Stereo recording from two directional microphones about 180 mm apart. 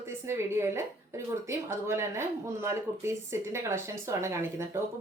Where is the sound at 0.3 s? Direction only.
15° right (ahead or behind).